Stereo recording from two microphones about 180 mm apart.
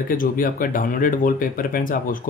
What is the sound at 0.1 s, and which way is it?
Speech, 50° left (ahead or behind).